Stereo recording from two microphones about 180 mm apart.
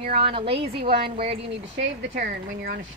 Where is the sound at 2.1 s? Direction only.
50° right (ahead or behind).